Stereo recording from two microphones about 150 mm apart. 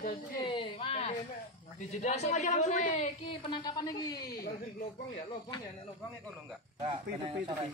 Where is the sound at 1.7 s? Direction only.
50° left (ahead or behind).